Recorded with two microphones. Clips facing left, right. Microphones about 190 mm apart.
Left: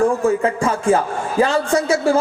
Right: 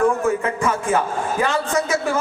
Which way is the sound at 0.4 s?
30° left (ahead or behind).